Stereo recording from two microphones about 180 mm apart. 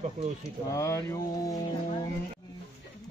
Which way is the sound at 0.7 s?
15° left (ahead or behind).